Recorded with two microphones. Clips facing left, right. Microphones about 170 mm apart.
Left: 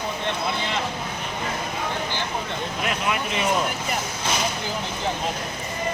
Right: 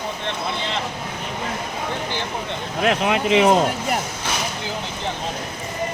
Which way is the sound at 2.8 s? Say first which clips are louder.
Right 8 dB; 85° right.